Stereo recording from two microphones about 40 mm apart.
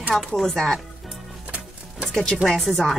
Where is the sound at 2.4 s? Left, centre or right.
Centre.